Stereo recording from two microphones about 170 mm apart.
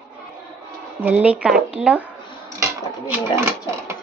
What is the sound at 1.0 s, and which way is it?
A woman's voice, 10° right (ahead or behind).